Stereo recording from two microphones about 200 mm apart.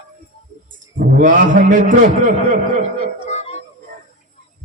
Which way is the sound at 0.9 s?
40° right (ahead or behind).